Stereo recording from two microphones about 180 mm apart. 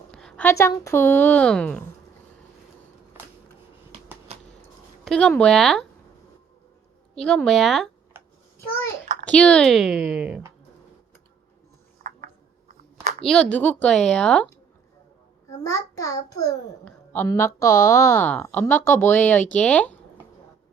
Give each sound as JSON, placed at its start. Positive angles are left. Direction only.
{"t": 0.1, "sound": "a woman's voice", "side_deg": 5}
{"t": 5.0, "sound": "a woman's voice", "side_deg": 5}
{"t": 7.2, "sound": "a woman's voice", "side_deg": 5}
{"t": 8.1, "sound": "a sound", "side_deg": -10}
{"t": 9.3, "sound": "a woman's voice", "side_deg": 5}
{"t": 12.0, "sound": "a sound", "side_deg": -45}
{"t": 13.2, "sound": "a woman's voice", "side_deg": 5}
{"t": 15.4, "sound": "a child's voice", "side_deg": 20}